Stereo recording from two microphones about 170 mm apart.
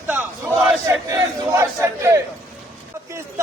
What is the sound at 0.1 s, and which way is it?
Crowd, 10° right (ahead or behind).